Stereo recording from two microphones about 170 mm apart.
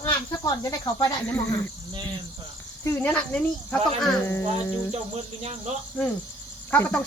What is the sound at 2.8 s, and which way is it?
Speech, 15° left (ahead or behind).